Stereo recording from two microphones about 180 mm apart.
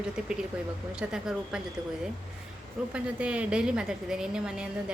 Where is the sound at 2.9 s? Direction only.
5° right (ahead or behind).